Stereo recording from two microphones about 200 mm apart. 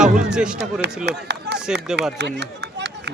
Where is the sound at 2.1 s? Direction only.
60° right (ahead or behind).